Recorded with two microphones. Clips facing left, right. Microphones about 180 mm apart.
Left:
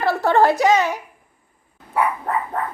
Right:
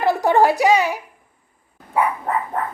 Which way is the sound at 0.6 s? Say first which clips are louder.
Even; 10° right (ahead or behind).